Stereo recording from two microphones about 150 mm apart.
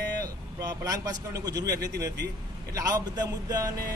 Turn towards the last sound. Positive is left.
turn(degrees=-25)  # may be behind; listen again after turning